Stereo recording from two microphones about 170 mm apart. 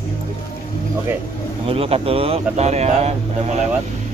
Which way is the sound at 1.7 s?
35° right (ahead or behind).